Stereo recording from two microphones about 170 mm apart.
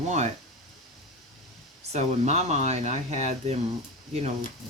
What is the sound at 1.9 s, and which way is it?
Speech, 40° right (ahead or behind).